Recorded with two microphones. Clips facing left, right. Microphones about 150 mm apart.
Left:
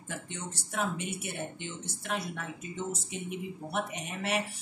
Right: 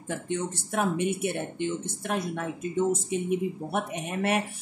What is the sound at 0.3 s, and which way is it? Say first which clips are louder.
Speech: right 10 dB; 55° right (ahead or behind).